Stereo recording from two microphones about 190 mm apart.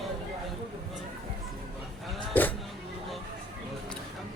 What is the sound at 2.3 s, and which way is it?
Sheep, 10° left (ahead or behind).